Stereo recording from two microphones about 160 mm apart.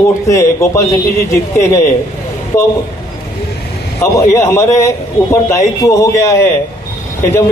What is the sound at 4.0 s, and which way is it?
A man's voice, 20° left (ahead or behind).